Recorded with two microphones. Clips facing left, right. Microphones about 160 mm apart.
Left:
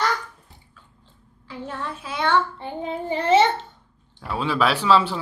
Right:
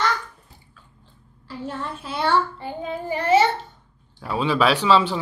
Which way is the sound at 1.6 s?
5° right (ahead or behind).